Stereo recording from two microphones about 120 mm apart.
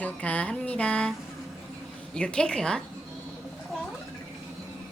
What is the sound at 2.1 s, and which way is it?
Speech, 10° left (ahead or behind).